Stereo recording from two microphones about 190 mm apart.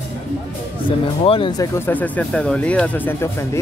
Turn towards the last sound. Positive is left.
turn(degrees=10)  # may be behind; listen again after turning